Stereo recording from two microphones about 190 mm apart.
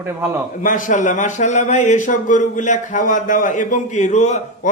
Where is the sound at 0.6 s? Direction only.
40° left (ahead or behind).